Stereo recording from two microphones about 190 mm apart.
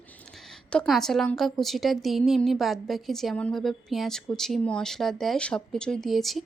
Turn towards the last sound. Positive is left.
turn(degrees=0)  # may be behind; listen again after turning